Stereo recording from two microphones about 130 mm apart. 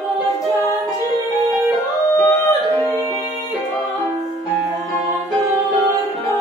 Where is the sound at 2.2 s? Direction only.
20° left (ahead or behind).